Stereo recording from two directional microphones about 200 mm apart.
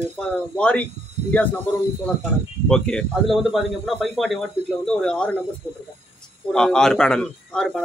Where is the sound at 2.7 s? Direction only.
5° left (ahead or behind).